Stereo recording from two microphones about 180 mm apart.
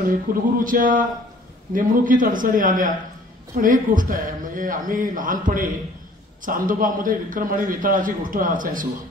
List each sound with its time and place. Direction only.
0.3 s a man's voice: 50° right (ahead or behind)